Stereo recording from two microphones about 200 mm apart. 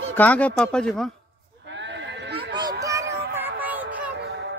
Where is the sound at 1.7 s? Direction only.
65° right (ahead or behind).